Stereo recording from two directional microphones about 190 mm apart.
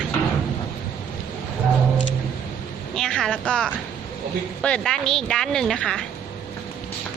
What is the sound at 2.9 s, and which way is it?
A woman's voice, 5° left (ahead or behind).